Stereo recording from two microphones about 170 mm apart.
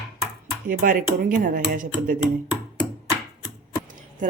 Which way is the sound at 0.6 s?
50° right (ahead or behind).